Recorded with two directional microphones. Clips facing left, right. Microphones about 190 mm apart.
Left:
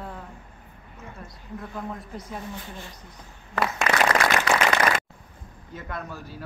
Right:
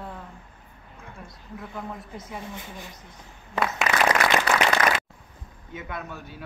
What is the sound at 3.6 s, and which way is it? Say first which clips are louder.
Applause: even; 15° right (ahead or behind).